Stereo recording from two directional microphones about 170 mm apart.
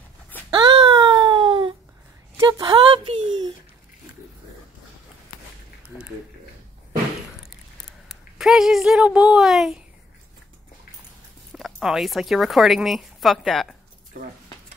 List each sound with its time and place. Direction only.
0.5 s a sound: 25° right (ahead or behind)
8.4 s speech: centre (ahead or behind)
11.5 s speech: centre (ahead or behind)
14.2 s speech: 50° right (ahead or behind)